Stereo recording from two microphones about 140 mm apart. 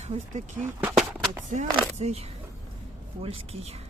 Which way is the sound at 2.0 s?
50° right (ahead or behind).